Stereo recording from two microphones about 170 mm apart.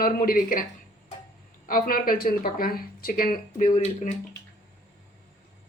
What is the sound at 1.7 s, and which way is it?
Speech, 60° left (ahead or behind).